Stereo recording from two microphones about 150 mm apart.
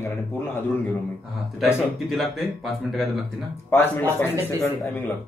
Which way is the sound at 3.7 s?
15° left (ahead or behind).